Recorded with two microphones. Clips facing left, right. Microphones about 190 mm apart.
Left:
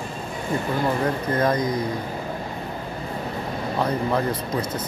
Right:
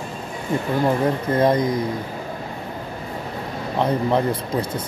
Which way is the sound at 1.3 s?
25° right (ahead or behind).